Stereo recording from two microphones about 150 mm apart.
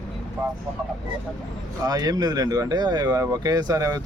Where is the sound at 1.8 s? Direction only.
25° right (ahead or behind).